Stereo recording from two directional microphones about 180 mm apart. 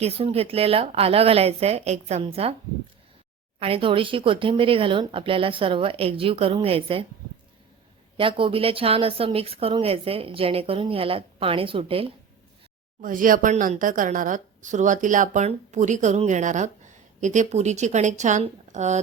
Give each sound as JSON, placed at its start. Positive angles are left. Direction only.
{"t": 0.0, "sound": "speech", "side_deg": -35}
{"t": 3.6, "sound": "speech", "side_deg": -30}
{"t": 8.1, "sound": "speech", "side_deg": -30}
{"t": 13.0, "sound": "a woman's voice", "side_deg": -50}